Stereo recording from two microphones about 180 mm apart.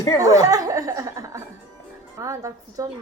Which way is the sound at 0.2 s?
20° right (ahead or behind).